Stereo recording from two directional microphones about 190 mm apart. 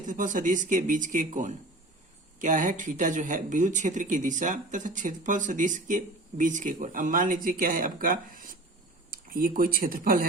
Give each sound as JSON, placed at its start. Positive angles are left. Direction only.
{"t": 0.0, "sound": "speech", "side_deg": -45}